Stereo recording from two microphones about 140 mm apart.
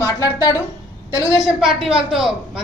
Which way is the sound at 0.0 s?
25° left (ahead or behind).